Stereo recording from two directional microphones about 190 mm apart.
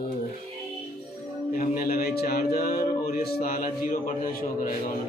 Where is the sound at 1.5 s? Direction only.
45° left (ahead or behind).